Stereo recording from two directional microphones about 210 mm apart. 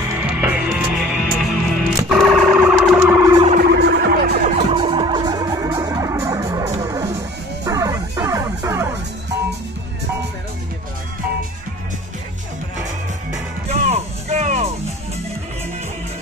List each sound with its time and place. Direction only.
0.1 s music: 10° right (ahead or behind)
3.2 s music: 20° right (ahead or behind)
3.4 s music: 45° right (ahead or behind)
4.6 s music: 25° right (ahead or behind)
13.7 s music: 30° right (ahead or behind)